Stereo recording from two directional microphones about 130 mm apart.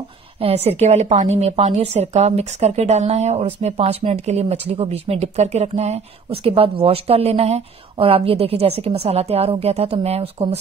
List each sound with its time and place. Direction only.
0.4 s speech: 50° right (ahead or behind)